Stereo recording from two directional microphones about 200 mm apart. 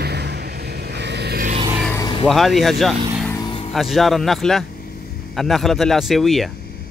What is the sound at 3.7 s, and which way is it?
Speech, centre (ahead or behind).